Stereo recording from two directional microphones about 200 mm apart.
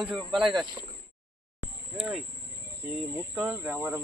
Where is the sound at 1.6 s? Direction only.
90° left.